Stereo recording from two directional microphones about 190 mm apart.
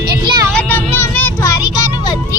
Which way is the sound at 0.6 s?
10° left (ahead or behind).